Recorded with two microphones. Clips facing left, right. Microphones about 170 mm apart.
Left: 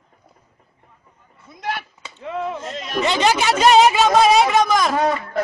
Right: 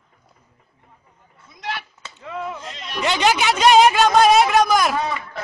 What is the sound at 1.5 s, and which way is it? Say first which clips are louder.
Chop: left 3 dB; 50° left (ahead or behind).